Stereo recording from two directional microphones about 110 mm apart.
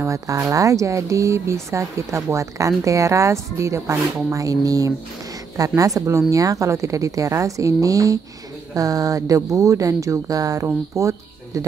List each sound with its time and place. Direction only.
0.0 s speech: 25° right (ahead or behind)